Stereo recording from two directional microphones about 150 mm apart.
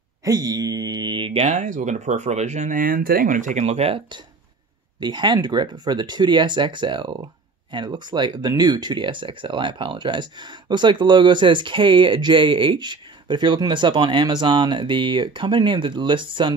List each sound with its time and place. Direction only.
0.2 s speech: 25° right (ahead or behind); by 4.2 s 40° right (ahead or behind)
5.0 s speech: 30° right (ahead or behind)